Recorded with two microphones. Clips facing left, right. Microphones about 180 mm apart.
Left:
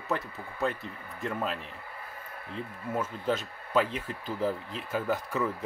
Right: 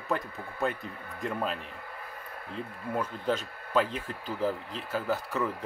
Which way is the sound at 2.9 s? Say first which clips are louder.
Even; 5° left (ahead or behind).